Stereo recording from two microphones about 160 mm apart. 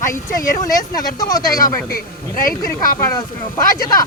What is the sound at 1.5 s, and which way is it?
Speech, 60° left (ahead or behind).